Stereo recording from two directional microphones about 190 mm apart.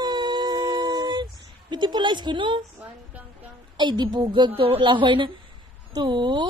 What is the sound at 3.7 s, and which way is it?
A woman's voice, 25° right (ahead or behind).